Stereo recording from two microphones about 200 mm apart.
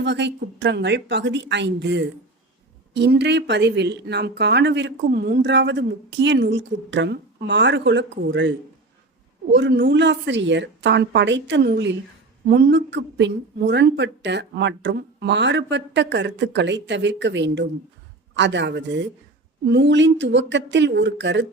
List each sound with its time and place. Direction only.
0.0 s speech: 60° right (ahead or behind)